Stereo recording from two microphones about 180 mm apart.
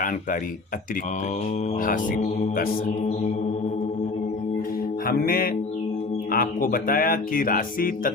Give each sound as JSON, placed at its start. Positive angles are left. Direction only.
{"t": 1.8, "sound": "speech", "side_deg": 50}
{"t": 5.0, "sound": "music", "side_deg": 55}
{"t": 6.3, "sound": "speech", "side_deg": 50}